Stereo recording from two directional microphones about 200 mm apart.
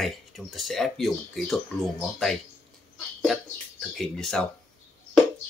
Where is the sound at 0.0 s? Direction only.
Centre (ahead or behind).